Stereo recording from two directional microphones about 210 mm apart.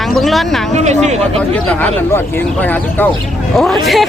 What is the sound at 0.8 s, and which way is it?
Speech, 30° right (ahead or behind).